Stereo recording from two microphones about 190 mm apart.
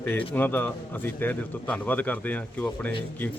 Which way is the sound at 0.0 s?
10° left (ahead or behind).